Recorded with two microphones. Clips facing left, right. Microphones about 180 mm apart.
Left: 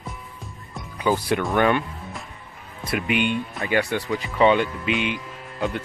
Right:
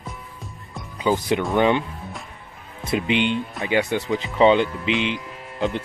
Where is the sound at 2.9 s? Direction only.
25° right (ahead or behind).